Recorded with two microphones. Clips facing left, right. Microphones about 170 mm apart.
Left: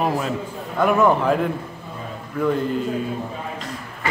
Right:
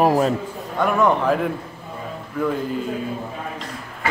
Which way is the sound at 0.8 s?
Centre (ahead or behind).